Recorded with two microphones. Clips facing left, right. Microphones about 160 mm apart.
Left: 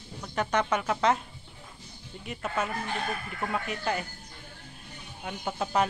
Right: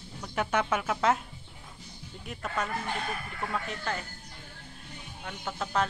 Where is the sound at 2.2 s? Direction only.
5° left (ahead or behind).